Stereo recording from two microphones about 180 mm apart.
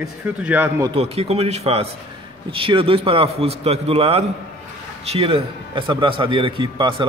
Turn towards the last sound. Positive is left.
turn(degrees=-30)  # may be behind; listen again after turning